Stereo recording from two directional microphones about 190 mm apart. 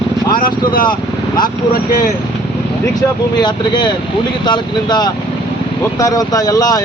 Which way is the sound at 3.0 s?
20° left (ahead or behind).